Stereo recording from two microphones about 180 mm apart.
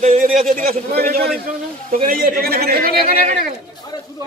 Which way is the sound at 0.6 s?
55° right (ahead or behind).